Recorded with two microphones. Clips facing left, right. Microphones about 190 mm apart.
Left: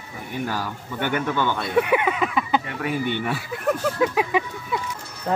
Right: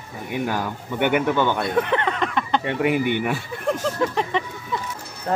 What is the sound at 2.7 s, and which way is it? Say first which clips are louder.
Speech: right 5 dB; 20° right (ahead or behind).